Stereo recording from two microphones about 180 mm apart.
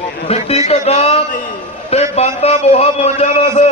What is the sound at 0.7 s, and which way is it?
Music, 35° left (ahead or behind).